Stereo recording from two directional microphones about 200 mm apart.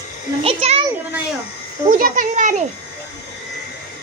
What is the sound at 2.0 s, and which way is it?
Speech, 40° right (ahead or behind).